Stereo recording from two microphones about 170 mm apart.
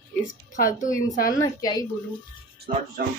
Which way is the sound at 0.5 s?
50° left (ahead or behind).